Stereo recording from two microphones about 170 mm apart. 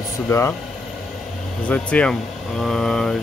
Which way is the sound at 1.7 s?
5° left (ahead or behind).